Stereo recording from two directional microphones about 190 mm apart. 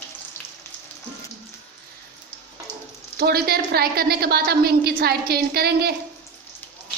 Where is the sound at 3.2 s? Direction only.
55° right (ahead or behind).